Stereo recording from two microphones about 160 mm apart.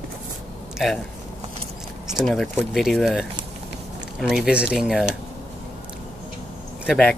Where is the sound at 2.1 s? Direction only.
Centre (ahead or behind).